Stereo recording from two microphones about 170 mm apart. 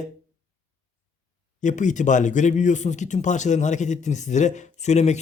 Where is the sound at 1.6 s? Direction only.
45° left (ahead or behind).